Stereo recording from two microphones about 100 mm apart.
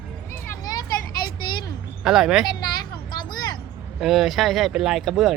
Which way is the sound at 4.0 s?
5° right (ahead or behind).